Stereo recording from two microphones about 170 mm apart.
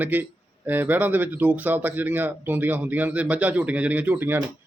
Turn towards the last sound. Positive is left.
turn(degrees=-10)  # may be behind; listen again after turning